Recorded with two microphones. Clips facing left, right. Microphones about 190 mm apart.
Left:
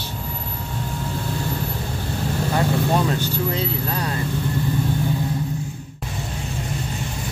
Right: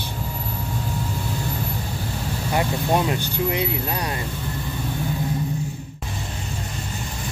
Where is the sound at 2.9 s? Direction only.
15° right (ahead or behind).